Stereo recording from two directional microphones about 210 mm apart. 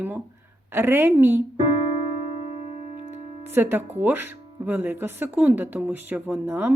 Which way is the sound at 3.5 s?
10° right (ahead or behind).